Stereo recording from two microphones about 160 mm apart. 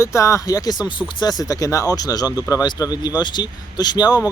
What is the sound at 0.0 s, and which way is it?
Speech, 20° left (ahead or behind).